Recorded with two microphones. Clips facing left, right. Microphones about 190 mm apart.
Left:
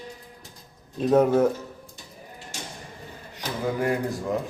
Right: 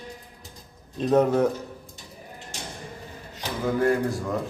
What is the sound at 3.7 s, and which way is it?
Speech, 15° left (ahead or behind).